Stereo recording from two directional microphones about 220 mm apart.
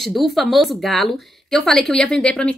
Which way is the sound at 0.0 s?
Centre (ahead or behind).